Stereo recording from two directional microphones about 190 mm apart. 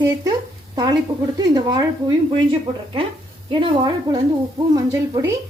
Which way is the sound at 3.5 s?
20° right (ahead or behind).